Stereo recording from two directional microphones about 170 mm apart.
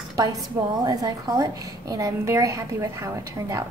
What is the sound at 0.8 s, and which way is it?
A woman's voice, 20° right (ahead or behind).